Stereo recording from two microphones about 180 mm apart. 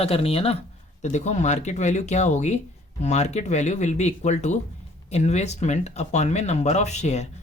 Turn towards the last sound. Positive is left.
turn(degrees=40)  # may be behind; listen again after turning